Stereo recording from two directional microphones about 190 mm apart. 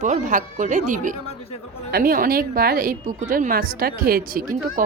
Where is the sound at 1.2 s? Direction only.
30° left (ahead or behind).